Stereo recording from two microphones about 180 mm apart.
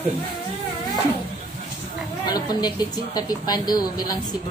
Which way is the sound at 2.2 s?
20° left (ahead or behind).